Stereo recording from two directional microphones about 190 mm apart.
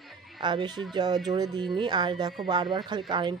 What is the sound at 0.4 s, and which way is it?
Speech, 25° right (ahead or behind).